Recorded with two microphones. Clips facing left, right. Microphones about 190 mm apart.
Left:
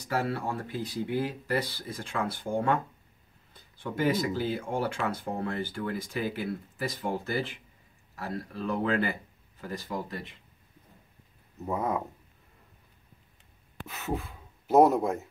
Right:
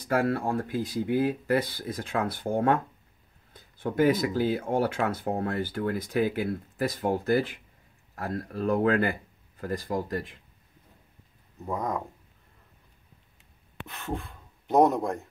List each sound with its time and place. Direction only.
0.1 s speech: 50° right (ahead or behind)
3.8 s speech: 50° right (ahead or behind)
11.6 s speech: 5° left (ahead or behind)
13.8 s speech: 5° left (ahead or behind)